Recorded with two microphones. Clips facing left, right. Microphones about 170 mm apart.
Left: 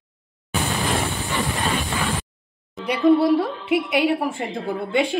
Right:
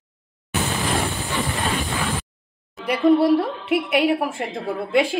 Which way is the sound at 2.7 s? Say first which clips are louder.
Even; centre (ahead or behind).